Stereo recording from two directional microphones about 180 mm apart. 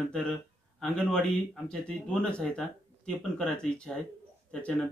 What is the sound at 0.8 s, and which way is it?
Speech, 5° left (ahead or behind).